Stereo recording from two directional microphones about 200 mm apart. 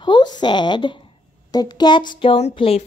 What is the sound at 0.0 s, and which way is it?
A woman's voice, 20° left (ahead or behind).